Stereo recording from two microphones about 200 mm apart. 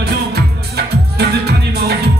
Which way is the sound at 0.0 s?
55° right (ahead or behind).